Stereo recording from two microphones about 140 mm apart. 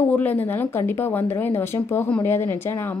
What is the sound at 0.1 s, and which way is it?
A woman's voice, 10° left (ahead or behind).